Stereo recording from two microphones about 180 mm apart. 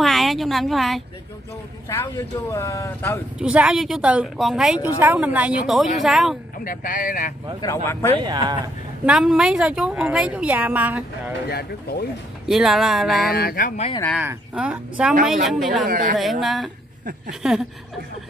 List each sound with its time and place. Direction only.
0.0 s a sound: centre (ahead or behind)
1.9 s speech: 15° left (ahead or behind)
3.3 s speech: 5° right (ahead or behind)
6.6 s speech: 50° left (ahead or behind)
7.6 s speech: 15° left (ahead or behind)
8.2 s speech: 25° right (ahead or behind)
9.0 s speech: 5° right (ahead or behind)
11.4 s speech: 60° left (ahead or behind)
12.4 s speech: centre (ahead or behind)
13.3 s speech: 55° left (ahead or behind)
14.1 s speech: 5° right (ahead or behind)
15.9 s a woman's voice: 45° right (ahead or behind)
16.2 s speech: centre (ahead or behind)